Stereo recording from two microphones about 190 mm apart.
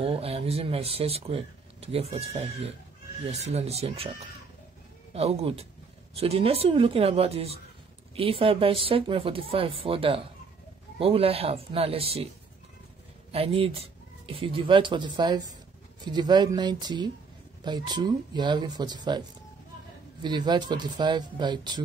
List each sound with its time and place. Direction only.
0.0 s speech: 30° right (ahead or behind)
13.3 s speech: 30° right (ahead or behind)